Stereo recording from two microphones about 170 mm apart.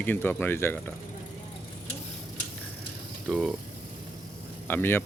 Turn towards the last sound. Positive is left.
turn(degrees=10)  # may be behind; listen again after turning